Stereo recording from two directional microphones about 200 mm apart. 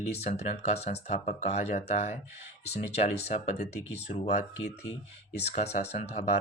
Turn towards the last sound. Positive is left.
turn(degrees=35)  # may be behind; listen again after turning